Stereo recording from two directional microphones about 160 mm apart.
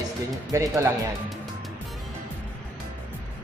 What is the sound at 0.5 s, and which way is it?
Speech, 20° right (ahead or behind).